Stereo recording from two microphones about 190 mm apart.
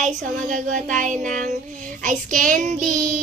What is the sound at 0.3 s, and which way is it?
Child singing, 40° right (ahead or behind).